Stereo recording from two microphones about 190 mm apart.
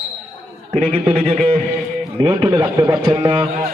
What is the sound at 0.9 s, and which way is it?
A man's voice, 30° right (ahead or behind).